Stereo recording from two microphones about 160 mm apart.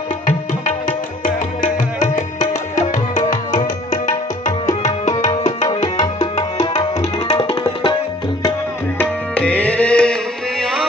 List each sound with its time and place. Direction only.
0.3 s music: 50° left (ahead or behind)
7.3 s tabla: 30° left (ahead or behind)
8.9 s tabla: 10° left (ahead or behind)
10.6 s music: centre (ahead or behind)